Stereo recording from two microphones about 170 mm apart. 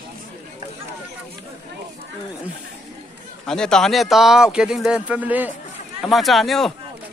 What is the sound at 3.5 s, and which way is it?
Speech, 5° left (ahead or behind).